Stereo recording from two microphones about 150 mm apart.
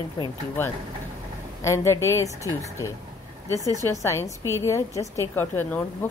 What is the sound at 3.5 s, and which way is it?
Speech, 25° right (ahead or behind).